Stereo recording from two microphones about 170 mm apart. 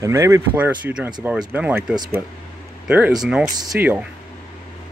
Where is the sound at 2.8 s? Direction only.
10° right (ahead or behind).